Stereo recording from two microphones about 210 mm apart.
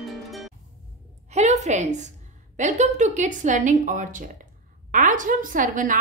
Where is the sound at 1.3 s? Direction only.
35° right (ahead or behind).